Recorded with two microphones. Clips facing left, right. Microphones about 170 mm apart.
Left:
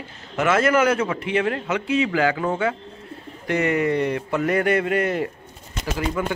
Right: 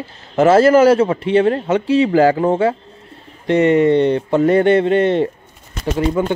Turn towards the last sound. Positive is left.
turn(degrees=-30)  # may be behind; listen again after turning